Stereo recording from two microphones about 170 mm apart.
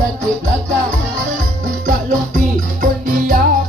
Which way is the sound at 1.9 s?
50° right (ahead or behind).